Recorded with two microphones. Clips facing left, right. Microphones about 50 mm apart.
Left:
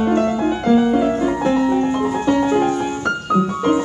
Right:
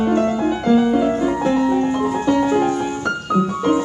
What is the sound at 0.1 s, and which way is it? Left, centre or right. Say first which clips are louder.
Music: even; left.